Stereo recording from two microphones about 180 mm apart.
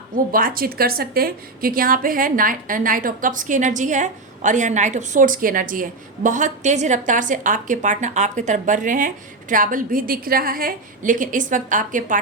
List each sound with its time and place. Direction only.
0.3 s a woman's voice: 50° right (ahead or behind)